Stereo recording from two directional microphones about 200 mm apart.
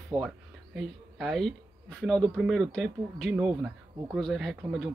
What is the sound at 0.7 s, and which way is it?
Speech, centre (ahead or behind).